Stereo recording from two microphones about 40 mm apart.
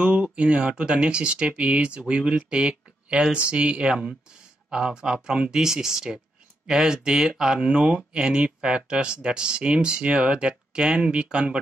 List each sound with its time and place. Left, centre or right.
0.0 s speech: right